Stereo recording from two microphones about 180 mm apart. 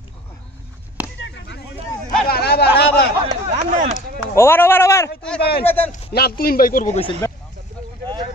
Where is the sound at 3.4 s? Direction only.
45° right (ahead or behind).